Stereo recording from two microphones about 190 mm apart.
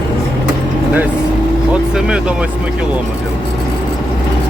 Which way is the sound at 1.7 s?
5° right (ahead or behind).